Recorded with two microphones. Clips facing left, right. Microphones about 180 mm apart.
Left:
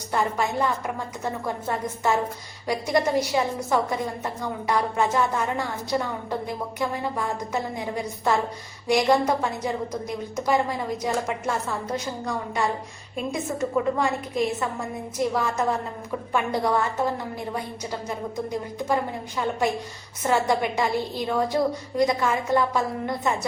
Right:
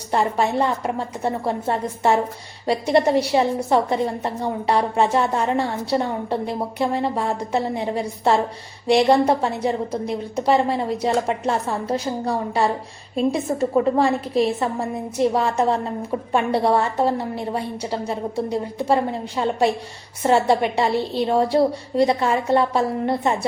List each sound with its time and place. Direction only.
0.1 s a woman's voice: 30° right (ahead or behind)